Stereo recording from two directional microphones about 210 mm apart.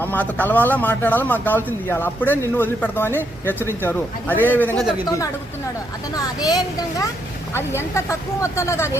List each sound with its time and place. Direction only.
0.0 s speech: 10° left (ahead or behind)
6.4 s speech: 20° left (ahead or behind)